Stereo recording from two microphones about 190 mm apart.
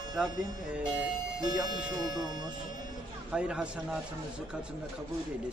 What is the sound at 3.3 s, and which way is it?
Speech, 5° right (ahead or behind).